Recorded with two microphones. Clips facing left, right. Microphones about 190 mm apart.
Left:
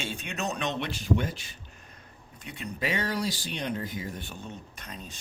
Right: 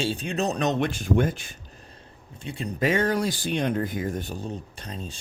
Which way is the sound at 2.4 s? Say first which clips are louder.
Right 6 dB; 30° right (ahead or behind).